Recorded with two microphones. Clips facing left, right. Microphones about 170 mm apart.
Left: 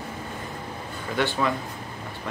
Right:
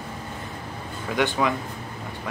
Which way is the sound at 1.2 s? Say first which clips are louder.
Right 2 dB; 15° right (ahead or behind).